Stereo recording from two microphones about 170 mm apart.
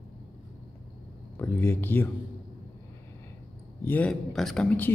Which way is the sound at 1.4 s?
10° left (ahead or behind).